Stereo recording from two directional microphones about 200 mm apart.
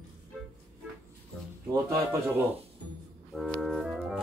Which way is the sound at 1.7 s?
15° right (ahead or behind).